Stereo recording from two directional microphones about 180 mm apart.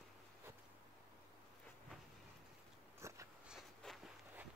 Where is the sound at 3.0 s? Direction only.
15° right (ahead or behind).